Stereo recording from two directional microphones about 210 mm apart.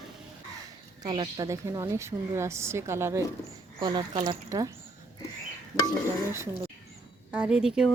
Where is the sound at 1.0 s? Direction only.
20° right (ahead or behind).